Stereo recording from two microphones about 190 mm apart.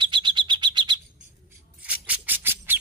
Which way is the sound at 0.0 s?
25° right (ahead or behind).